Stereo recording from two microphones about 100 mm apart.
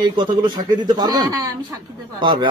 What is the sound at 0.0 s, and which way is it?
A woman's voice, 50° right (ahead or behind).